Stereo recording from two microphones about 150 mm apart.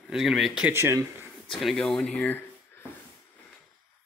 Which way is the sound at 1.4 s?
Centre (ahead or behind).